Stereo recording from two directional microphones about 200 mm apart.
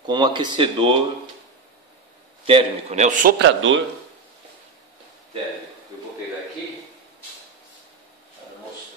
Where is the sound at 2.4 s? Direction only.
30° right (ahead or behind).